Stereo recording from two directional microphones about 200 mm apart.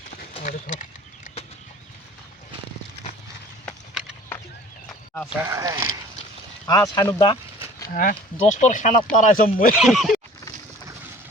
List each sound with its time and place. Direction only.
0.3 s a sound: 40° left (ahead or behind)
3.7 s a sound: centre (ahead or behind)
5.5 s speech: 15° right (ahead or behind)
6.7 s speech: 20° left (ahead or behind)
8.1 s speech: 35° left (ahead or behind)
9.7 s speech: centre (ahead or behind)